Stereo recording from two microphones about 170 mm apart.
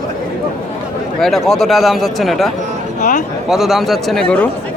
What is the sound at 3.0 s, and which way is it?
Speech, 50° left (ahead or behind).